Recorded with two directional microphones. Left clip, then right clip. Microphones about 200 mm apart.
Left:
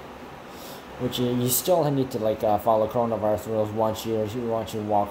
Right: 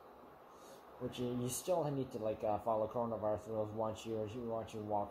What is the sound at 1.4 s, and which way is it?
Speech, 10° left (ahead or behind).